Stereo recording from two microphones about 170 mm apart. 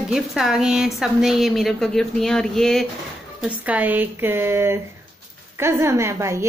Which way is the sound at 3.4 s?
10° right (ahead or behind).